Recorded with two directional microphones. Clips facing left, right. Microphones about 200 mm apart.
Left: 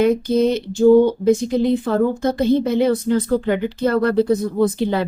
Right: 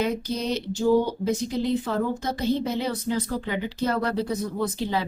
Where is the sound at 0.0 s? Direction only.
55° left (ahead or behind).